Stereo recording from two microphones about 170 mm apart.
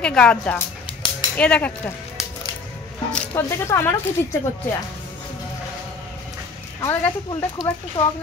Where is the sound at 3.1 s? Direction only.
10° left (ahead or behind).